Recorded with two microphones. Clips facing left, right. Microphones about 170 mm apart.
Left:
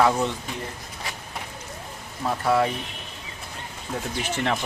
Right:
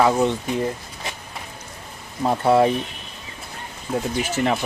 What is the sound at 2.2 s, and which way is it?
Speech, 25° right (ahead or behind).